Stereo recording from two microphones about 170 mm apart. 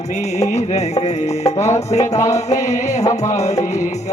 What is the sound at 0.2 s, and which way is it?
Music, 40° left (ahead or behind).